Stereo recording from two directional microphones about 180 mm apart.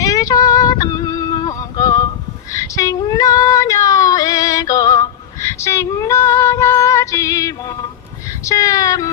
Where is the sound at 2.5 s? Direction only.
20° left (ahead or behind).